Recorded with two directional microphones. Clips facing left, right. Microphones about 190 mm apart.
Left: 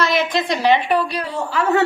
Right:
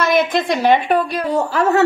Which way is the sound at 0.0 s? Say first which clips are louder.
Right 3 dB; 50° right (ahead or behind).